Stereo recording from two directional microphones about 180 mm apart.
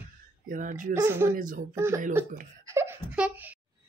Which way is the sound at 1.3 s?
45° right (ahead or behind).